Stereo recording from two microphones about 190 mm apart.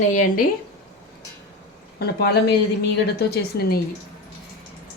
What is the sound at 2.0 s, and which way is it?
Speech, 55° left (ahead or behind).